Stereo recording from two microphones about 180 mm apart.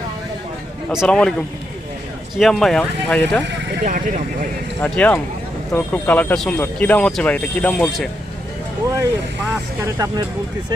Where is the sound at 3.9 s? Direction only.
45° right (ahead or behind).